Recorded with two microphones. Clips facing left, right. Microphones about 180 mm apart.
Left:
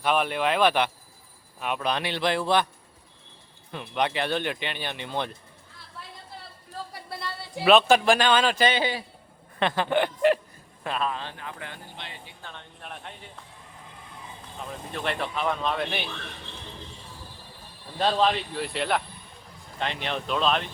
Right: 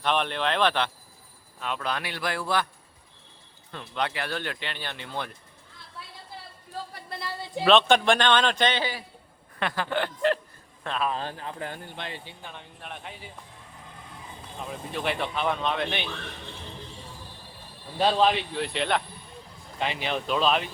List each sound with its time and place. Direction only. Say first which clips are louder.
0.0 s a man's voice: left 2 dB; 5° left (ahead or behind)
3.7 s speech: left 3 dB; 15° left (ahead or behind)
6.9 s a sound: left 1 dB; 5° left (ahead or behind)
7.6 s speech: left 1 dB; 5° left (ahead or behind)
8.8 s a man's voice: left 3 dB; 25° left (ahead or behind)
11.1 s speech: right 3 dB; 40° right (ahead or behind)
12.4 s speech: right 1 dB; 10° right (ahead or behind)
14.7 s speech: right 1 dB; 5° right (ahead or behind)
17.9 s speech: right 1 dB; 5° right (ahead or behind)